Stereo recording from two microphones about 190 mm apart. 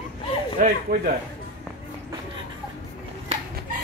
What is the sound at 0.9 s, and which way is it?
Speech, 55° right (ahead or behind).